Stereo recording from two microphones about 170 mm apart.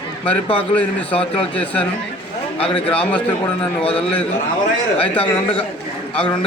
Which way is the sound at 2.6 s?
35° left (ahead or behind).